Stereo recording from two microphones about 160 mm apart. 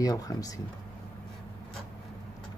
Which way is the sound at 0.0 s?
25° left (ahead or behind).